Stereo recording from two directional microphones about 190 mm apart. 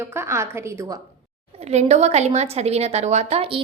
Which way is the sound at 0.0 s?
15° right (ahead or behind).